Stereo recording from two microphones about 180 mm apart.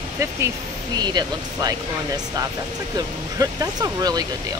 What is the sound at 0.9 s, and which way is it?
Speech, 25° right (ahead or behind).